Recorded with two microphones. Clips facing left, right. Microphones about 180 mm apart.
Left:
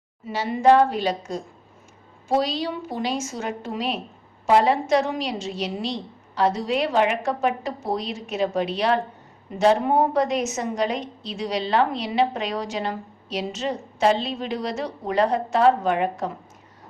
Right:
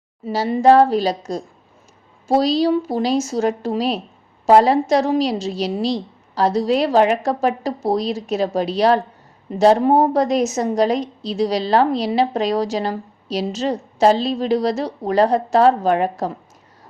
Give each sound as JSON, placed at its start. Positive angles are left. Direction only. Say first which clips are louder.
{"t": 0.3, "sound": "a woman's voice", "louder": "right 4 dB", "side_deg": -35}